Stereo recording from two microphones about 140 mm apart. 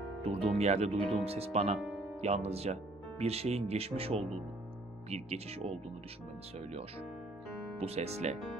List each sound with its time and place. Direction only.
0.2 s speech: 45° right (ahead or behind)
7.7 s speech: 50° right (ahead or behind)